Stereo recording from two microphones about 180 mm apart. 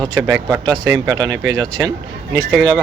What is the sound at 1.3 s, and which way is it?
Speech, 90° right.